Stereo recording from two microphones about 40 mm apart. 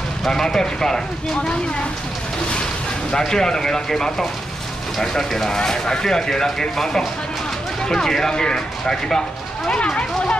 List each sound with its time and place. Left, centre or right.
0.3 s speech: centre
2.5 s speech: left
5.3 s speech: centre
5.6 s speech: centre